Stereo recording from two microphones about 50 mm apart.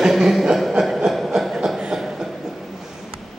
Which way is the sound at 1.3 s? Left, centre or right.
Centre.